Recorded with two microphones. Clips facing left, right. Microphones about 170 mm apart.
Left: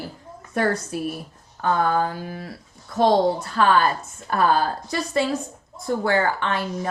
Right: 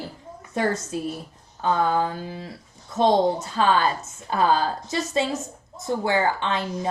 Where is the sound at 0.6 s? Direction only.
20° right (ahead or behind).